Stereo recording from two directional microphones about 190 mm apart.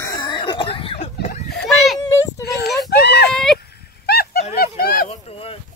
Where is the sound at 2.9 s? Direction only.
60° left (ahead or behind).